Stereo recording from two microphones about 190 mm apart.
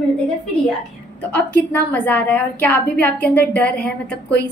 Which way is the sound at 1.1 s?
10° left (ahead or behind).